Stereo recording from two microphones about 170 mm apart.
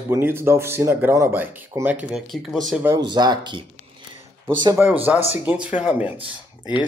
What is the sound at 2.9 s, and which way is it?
Speech, 25° right (ahead or behind).